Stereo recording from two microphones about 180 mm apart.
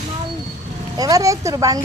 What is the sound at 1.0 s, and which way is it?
Speech, 20° right (ahead or behind).